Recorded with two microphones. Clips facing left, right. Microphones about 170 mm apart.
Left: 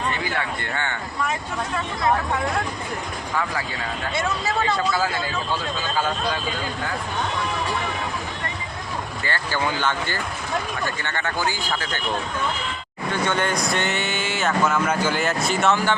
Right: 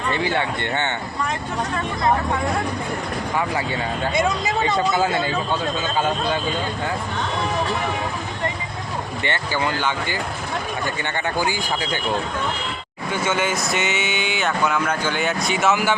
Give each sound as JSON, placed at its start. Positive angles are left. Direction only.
{"t": 0.2, "sound": "speech", "side_deg": -25}
{"t": 4.1, "sound": "speech", "side_deg": -15}
{"t": 9.2, "sound": "speech", "side_deg": -20}
{"t": 11.0, "sound": "speech", "side_deg": -15}
{"t": 13.1, "sound": "speech", "side_deg": -5}